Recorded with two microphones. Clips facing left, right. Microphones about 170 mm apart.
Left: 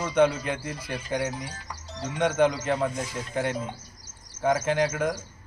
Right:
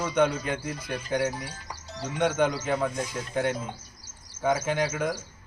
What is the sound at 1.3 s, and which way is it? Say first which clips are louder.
A man's voice: left 1 dB; 5° right (ahead or behind).